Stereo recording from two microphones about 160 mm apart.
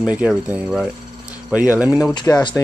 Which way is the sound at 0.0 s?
5° right (ahead or behind).